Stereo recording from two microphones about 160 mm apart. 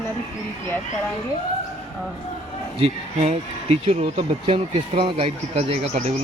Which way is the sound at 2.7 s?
40° right (ahead or behind).